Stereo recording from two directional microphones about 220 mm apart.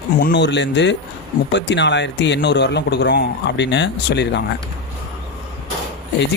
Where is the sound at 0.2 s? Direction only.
50° left (ahead or behind).